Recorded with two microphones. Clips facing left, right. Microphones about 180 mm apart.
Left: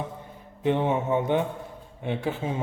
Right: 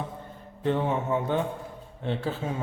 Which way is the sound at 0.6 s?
15° left (ahead or behind).